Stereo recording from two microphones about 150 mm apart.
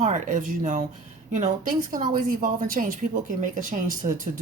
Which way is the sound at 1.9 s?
65° right (ahead or behind).